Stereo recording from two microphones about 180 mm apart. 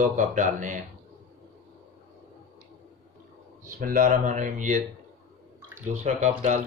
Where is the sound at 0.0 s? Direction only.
45° right (ahead or behind).